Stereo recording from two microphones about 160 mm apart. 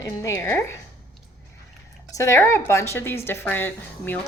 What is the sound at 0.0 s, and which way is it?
Speech, 20° left (ahead or behind).